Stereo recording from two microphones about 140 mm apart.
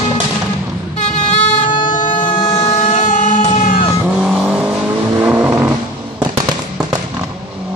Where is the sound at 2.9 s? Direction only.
60° left (ahead or behind).